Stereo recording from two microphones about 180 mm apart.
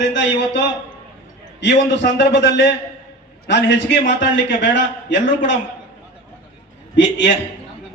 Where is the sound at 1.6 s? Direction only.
75° left (ahead or behind).